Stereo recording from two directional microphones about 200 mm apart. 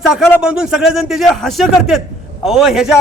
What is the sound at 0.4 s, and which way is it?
A man's voice, 5° right (ahead or behind).